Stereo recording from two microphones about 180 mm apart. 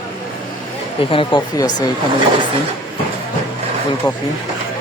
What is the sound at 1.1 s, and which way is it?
Speech, 30° left (ahead or behind).